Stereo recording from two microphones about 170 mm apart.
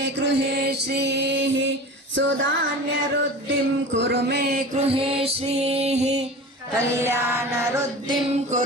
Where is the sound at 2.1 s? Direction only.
90° right.